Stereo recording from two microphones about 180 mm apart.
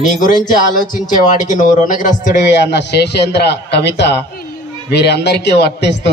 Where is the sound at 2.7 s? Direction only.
70° left (ahead or behind).